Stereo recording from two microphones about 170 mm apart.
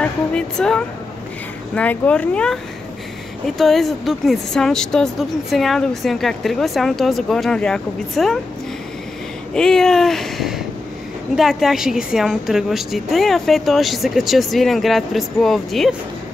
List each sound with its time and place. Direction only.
0.0 s speech: 5° left (ahead or behind)
9.5 s speech: 5° left (ahead or behind)